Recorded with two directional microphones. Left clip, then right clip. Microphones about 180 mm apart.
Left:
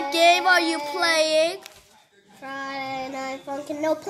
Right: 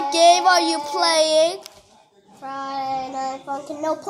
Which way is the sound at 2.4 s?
50° left (ahead or behind).